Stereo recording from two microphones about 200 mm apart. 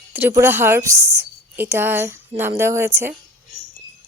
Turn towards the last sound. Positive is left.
turn(degrees=-15)  # may be behind; listen again after turning